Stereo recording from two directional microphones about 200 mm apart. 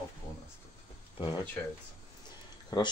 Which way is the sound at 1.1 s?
25° left (ahead or behind).